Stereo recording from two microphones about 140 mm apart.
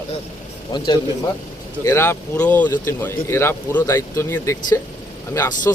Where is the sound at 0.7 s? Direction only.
35° left (ahead or behind).